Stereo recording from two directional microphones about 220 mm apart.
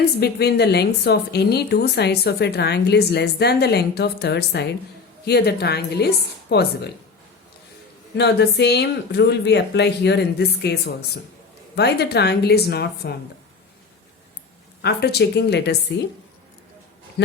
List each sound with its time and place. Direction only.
0.0 s a woman's voice: 45° left (ahead or behind)
8.1 s a woman's voice: 50° left (ahead or behind)
14.8 s a woman's voice: 45° left (ahead or behind)
17.2 s a sound: 50° left (ahead or behind)